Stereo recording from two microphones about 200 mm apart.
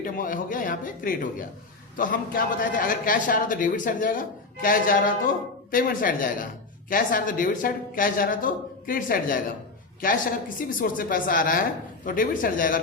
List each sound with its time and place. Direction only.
0.0 s a man's voice: 45° left (ahead or behind)